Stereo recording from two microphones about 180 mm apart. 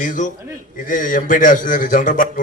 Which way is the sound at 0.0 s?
45° left (ahead or behind).